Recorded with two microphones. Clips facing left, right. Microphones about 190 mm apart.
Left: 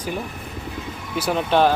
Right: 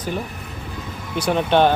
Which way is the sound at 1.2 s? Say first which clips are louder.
Right 2 dB; 5° left (ahead or behind).